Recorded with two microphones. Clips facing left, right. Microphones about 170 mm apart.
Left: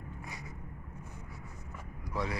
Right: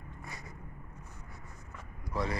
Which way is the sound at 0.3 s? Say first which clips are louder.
Left 1 dB; 10° left (ahead or behind).